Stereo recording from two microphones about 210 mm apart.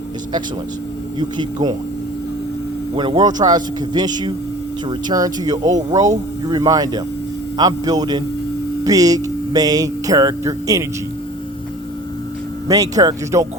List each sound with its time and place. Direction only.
1.2 s a man's voice: 20° right (ahead or behind)
2.9 s a man's voice: 25° right (ahead or behind)
12.6 s speech: 15° right (ahead or behind)